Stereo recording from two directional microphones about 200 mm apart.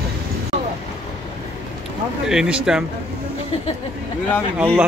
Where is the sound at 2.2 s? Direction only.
5° right (ahead or behind).